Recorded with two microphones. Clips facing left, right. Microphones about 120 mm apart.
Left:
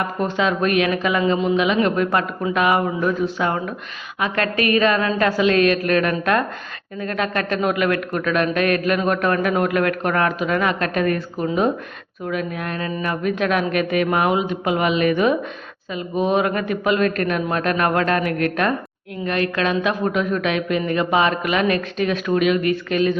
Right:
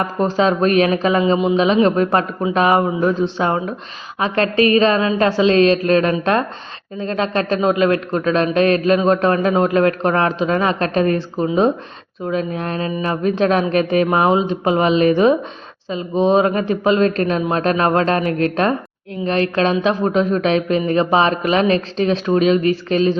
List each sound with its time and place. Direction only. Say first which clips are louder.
0.0 s a man's voice: right 4 dB; 35° right (ahead or behind)